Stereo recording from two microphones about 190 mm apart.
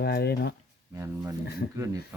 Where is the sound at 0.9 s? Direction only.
15° right (ahead or behind).